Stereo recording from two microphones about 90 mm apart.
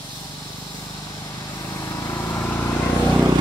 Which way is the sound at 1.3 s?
35° left (ahead or behind).